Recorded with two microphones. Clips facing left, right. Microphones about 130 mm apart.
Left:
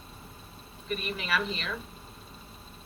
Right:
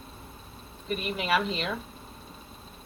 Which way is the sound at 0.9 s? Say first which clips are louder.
Right 4 dB; 25° right (ahead or behind).